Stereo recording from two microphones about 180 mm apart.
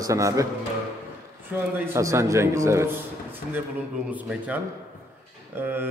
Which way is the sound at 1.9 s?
15° right (ahead or behind).